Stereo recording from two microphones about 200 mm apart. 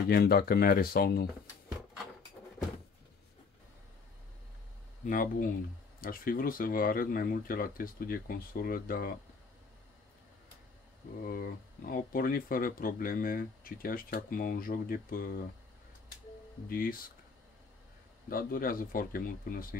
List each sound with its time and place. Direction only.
0.1 s speech: 55° left (ahead or behind)
5.0 s speech: 40° left (ahead or behind)
11.2 s speech: 45° left (ahead or behind)
16.6 s speech: 45° left (ahead or behind)
18.3 s speech: 45° left (ahead or behind)